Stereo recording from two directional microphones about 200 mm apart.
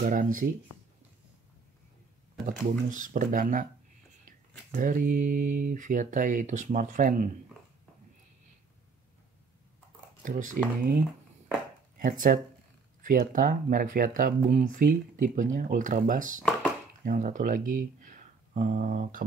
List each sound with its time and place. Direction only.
0.0 s speech: 45° right (ahead or behind)
2.9 s speech: 40° right (ahead or behind)
4.7 s speech: 40° right (ahead or behind)
10.2 s speech: 40° right (ahead or behind)
12.0 s speech: 45° right (ahead or behind)